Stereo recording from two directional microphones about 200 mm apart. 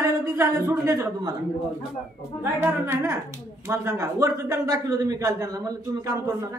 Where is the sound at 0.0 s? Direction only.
15° right (ahead or behind).